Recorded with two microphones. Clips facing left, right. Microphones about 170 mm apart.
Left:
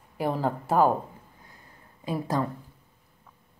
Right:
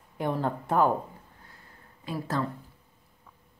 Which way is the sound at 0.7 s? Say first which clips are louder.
Left 2 dB; 5° left (ahead or behind).